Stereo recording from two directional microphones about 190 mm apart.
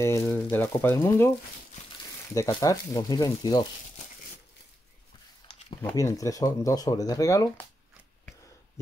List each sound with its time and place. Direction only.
0.0 s speech: 15° left (ahead or behind)
2.3 s speech: 15° left (ahead or behind)
5.4 s a sound: 30° left (ahead or behind)
5.8 s speech: 15° left (ahead or behind)